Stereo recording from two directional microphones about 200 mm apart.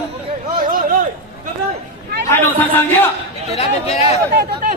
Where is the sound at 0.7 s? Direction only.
45° right (ahead or behind).